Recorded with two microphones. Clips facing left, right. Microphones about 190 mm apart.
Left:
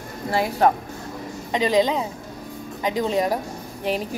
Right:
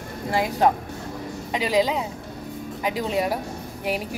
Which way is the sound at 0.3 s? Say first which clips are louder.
Left 1 dB; 15° right (ahead or behind).